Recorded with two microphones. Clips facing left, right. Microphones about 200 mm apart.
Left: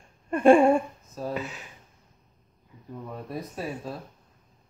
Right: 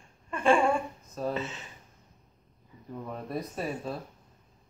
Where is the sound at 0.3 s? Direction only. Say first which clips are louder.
Left 7 dB; 45° left (ahead or behind).